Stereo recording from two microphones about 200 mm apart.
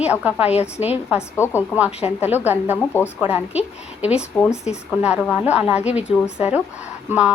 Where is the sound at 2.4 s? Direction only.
10° right (ahead or behind).